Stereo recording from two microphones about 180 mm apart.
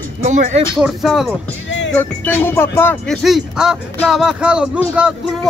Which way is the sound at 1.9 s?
10° left (ahead or behind).